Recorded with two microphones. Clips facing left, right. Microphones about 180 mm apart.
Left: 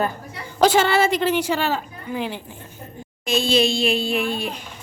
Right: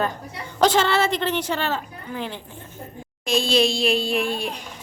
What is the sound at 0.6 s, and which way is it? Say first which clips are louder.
A woman's voice: left 2 dB; 10° left (ahead or behind).